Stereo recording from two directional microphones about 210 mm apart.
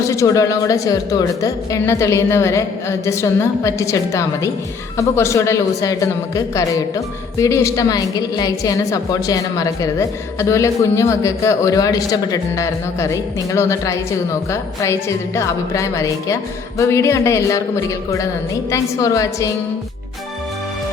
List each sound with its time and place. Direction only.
0.0 s speech: 15° left (ahead or behind)